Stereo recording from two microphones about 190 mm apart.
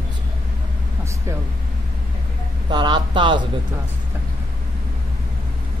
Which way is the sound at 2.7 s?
20° right (ahead or behind).